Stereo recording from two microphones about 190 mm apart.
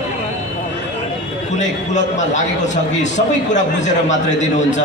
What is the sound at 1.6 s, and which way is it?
A man's voice, 40° left (ahead or behind).